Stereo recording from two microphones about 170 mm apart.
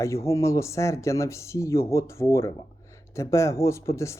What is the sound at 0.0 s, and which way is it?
Speech, 15° left (ahead or behind).